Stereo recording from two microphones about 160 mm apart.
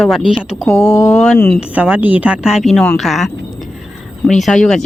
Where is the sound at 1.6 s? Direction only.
10° right (ahead or behind).